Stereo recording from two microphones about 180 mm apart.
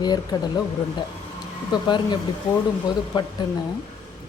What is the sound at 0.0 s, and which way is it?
Speech, 20° left (ahead or behind).